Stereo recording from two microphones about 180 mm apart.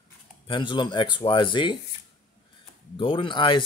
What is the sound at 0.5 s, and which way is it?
Speech, 25° left (ahead or behind).